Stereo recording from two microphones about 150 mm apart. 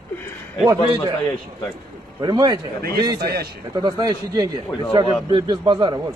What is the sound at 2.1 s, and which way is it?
Speech, 25° right (ahead or behind).